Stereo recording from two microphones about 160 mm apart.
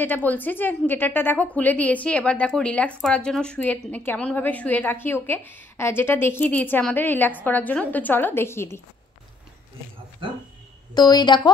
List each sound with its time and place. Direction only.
0.0 s a woman's voice: 10° left (ahead or behind)
10.2 s speech: 30° right (ahead or behind)
11.0 s a woman's voice: 25° left (ahead or behind)